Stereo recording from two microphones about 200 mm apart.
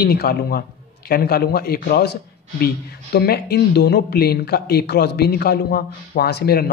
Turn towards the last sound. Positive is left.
turn(degrees=50)  # may be behind; listen again after turning